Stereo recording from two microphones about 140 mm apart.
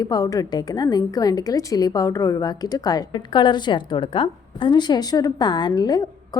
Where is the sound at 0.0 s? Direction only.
25° left (ahead or behind).